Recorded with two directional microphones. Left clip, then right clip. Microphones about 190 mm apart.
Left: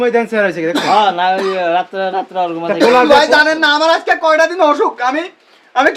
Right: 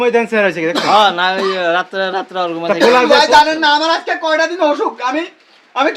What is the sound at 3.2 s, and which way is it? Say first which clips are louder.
Speech: right 1 dB; 30° left (ahead or behind).